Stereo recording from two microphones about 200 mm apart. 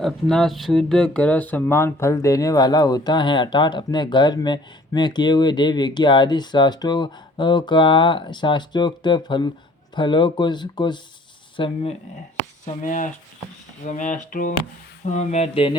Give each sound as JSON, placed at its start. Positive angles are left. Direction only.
{"t": 0.0, "sound": "speech", "side_deg": 0}
{"t": 12.6, "sound": "speech", "side_deg": 40}